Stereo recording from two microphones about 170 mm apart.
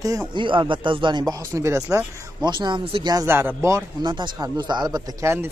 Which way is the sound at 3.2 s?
15° right (ahead or behind).